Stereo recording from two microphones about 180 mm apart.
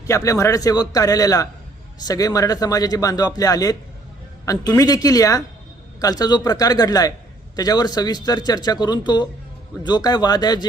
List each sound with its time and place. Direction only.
0.1 s a man's voice: 15° left (ahead or behind)